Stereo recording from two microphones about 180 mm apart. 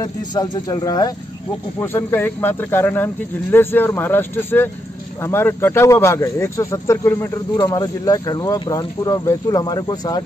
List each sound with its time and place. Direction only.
0.0 s speech: 25° left (ahead or behind)